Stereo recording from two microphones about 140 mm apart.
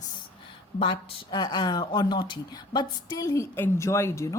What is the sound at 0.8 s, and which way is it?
A woman's voice, 40° left (ahead or behind).